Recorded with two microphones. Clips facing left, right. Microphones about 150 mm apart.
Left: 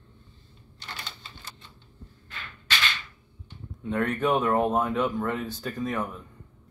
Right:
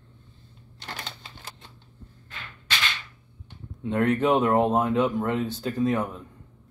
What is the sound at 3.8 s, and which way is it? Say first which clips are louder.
Speech: right 3 dB; 25° right (ahead or behind).